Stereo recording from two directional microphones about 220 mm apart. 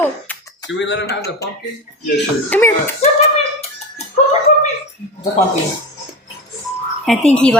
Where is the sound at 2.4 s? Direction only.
10° left (ahead or behind).